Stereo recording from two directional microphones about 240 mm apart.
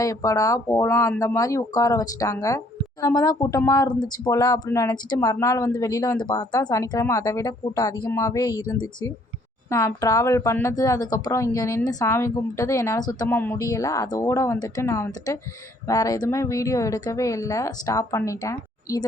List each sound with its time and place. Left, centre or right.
0.0 s a woman's voice: centre